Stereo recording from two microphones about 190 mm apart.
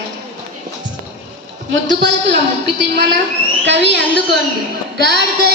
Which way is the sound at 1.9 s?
65° right (ahead or behind).